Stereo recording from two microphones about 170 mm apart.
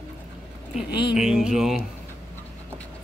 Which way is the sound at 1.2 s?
5° right (ahead or behind).